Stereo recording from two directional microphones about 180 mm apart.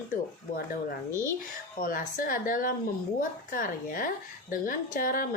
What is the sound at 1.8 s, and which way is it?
A woman's voice, 50° left (ahead or behind).